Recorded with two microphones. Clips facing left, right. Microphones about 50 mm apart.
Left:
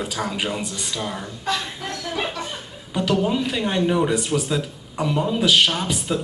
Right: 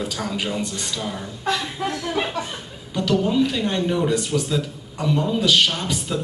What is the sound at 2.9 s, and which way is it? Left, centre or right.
Speech, centre.